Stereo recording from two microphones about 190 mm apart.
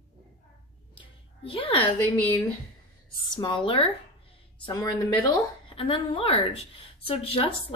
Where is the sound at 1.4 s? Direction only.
30° left (ahead or behind).